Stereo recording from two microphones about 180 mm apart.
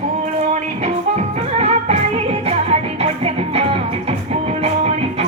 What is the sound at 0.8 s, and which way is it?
Music, 35° right (ahead or behind).